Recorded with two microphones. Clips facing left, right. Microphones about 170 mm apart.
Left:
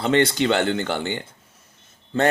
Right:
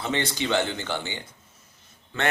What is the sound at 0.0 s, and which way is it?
Speech, 65° left (ahead or behind).